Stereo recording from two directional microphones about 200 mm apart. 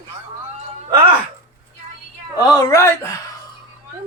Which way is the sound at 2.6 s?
15° left (ahead or behind).